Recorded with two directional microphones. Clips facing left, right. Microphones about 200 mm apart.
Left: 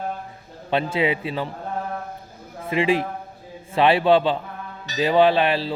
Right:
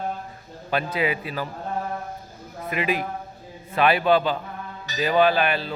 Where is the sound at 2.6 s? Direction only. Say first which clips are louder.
Left 5 dB; 30° left (ahead or behind).